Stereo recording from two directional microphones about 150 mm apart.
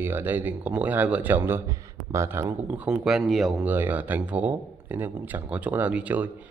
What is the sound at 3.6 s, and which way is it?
Speech, 10° right (ahead or behind).